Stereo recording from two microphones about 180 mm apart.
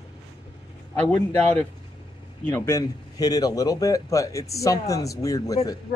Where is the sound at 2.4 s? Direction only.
10° left (ahead or behind).